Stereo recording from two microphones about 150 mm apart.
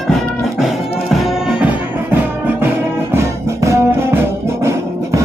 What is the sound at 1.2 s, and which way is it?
Music, 5° right (ahead or behind).